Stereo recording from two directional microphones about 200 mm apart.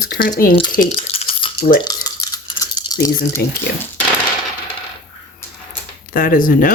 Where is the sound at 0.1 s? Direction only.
50° left (ahead or behind).